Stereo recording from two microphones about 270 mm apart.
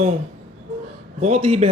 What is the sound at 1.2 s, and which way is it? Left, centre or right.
Speech, right.